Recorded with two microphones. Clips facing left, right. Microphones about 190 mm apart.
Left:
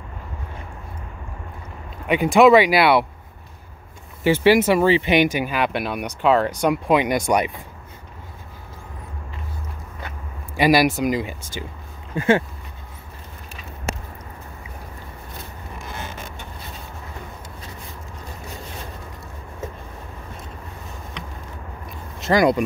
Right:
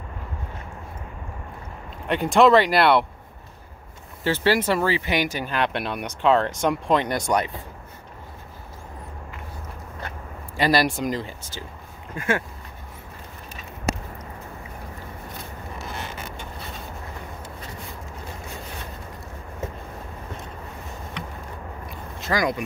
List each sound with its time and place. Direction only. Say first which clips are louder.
2.0 s speech: left 3 dB; 5° left (ahead or behind)
4.2 s speech: left 6 dB; 15° left (ahead or behind)
10.5 s speech: left 4 dB; 10° left (ahead or behind)
12.2 s speech: left 7 dB; 25° left (ahead or behind)
22.2 s a sound: left 7 dB; 25° left (ahead or behind)